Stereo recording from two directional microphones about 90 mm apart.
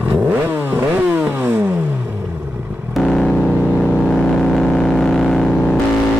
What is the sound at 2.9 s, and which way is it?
Vehicle, 5° left (ahead or behind).